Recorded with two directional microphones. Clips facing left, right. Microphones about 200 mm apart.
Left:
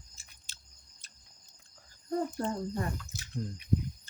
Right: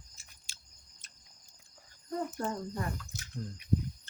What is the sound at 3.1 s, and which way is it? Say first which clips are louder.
Drip: left 1 dB; 10° left (ahead or behind).